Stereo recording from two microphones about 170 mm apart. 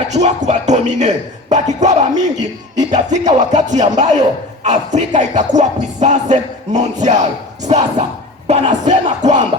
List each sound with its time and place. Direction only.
0.1 s music: 40° right (ahead or behind)